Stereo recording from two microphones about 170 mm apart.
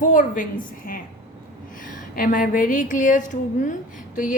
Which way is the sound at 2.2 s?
55° left (ahead or behind).